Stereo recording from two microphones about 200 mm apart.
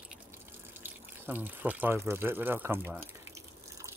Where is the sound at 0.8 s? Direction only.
10° right (ahead or behind).